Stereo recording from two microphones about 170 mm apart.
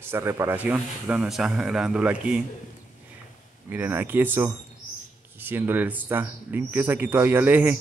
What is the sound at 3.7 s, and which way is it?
Speech, 10° right (ahead or behind).